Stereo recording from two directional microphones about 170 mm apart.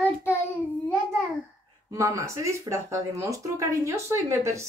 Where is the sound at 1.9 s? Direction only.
20° right (ahead or behind).